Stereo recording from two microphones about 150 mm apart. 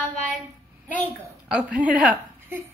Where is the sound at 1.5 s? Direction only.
10° right (ahead or behind).